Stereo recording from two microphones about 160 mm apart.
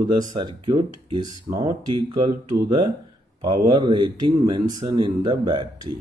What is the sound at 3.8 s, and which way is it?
Speech, 30° right (ahead or behind).